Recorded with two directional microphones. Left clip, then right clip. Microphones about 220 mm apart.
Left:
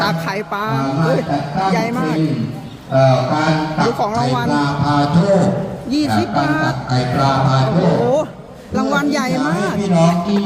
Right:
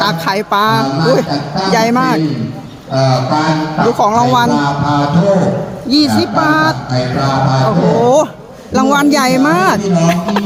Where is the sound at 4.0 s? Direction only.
20° right (ahead or behind).